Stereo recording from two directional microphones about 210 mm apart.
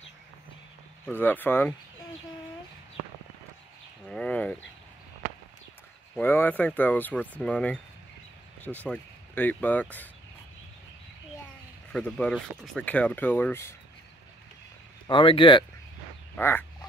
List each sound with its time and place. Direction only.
1.0 s speech: 10° left (ahead or behind)
4.1 s speech: 5° left (ahead or behind)
6.1 s speech: 10° left (ahead or behind)
11.9 s speech: 5° left (ahead or behind)
15.0 s speech: 25° left (ahead or behind)
16.3 s duck: 10° left (ahead or behind)